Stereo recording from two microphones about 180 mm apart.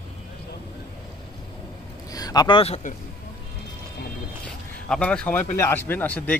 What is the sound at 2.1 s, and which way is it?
Speech, 20° left (ahead or behind).